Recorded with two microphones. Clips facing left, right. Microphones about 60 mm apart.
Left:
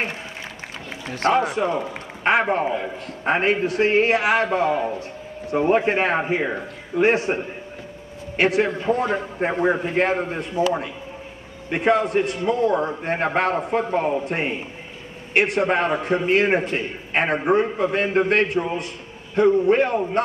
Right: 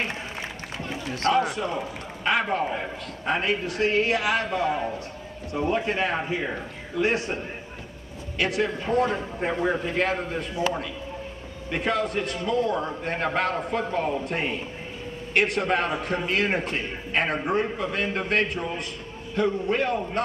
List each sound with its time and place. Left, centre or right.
1.3 s a man's voice: left
4.7 s a man's voice: centre
5.5 s a man's voice: left
11.7 s a man's voice: left